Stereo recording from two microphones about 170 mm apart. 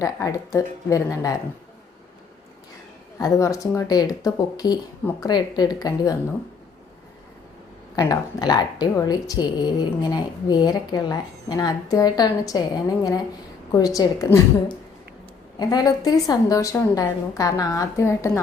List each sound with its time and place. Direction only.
0.0 s a woman's voice: 20° left (ahead or behind)
3.2 s a woman's voice: 20° left (ahead or behind)
7.9 s a woman's voice: 20° left (ahead or behind)
15.5 s a woman's voice: 25° left (ahead or behind)